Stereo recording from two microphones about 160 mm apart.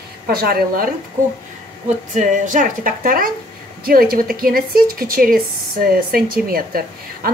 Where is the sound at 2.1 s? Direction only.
50° right (ahead or behind).